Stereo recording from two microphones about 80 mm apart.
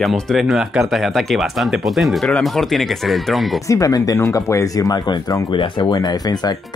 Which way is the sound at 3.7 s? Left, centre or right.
Left.